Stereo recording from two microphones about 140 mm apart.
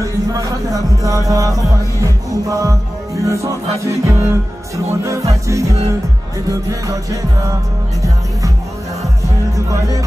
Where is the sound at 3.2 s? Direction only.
20° right (ahead or behind).